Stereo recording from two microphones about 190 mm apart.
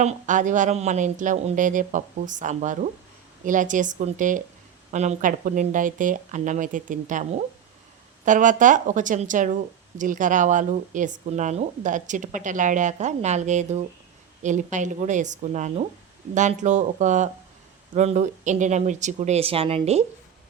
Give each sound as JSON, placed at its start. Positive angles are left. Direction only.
{"t": 0.0, "sound": "speech", "side_deg": -40}